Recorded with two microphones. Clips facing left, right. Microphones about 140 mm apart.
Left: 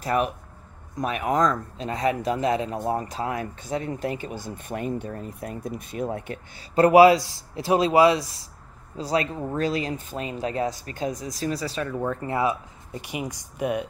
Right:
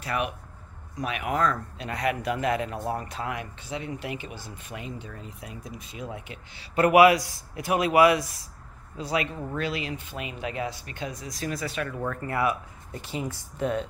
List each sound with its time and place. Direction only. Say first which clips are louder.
0.0 s speech: left 5 dB; 40° left (ahead or behind)
6.7 s a man's voice: left 3 dB; 30° left (ahead or behind)
12.0 s a man's voice: left 2 dB; 20° left (ahead or behind)